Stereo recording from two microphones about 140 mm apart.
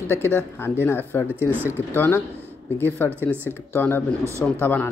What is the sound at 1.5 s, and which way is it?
Speech, 15° right (ahead or behind).